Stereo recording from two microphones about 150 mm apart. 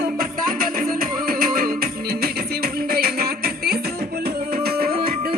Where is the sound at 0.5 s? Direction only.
70° right (ahead or behind).